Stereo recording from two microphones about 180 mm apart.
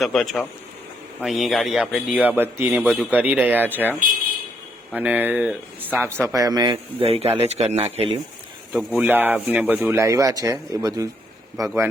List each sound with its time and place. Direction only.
0.0 s a man's voice: centre (ahead or behind)
2.8 s a man's voice: centre (ahead or behind)
4.9 s speech: 10° right (ahead or behind); by 8.2 s 35° right (ahead or behind)
9.0 s speech: 10° right (ahead or behind)